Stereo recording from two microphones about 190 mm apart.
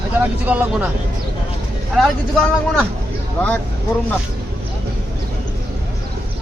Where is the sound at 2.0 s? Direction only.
Centre (ahead or behind).